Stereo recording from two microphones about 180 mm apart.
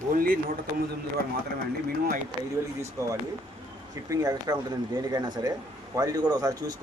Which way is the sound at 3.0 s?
15° right (ahead or behind).